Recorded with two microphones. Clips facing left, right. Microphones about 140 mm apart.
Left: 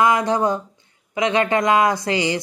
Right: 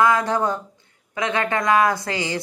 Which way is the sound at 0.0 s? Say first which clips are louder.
Left 1 dB; 15° left (ahead or behind).